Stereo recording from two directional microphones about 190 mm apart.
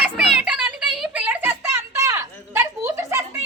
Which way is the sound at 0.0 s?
5° right (ahead or behind).